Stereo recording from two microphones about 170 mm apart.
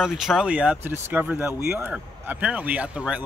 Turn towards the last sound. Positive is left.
turn(degrees=-5)  # may be behind; listen again after turning